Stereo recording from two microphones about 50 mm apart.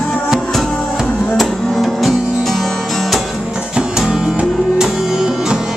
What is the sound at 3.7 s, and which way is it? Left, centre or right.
Music, centre.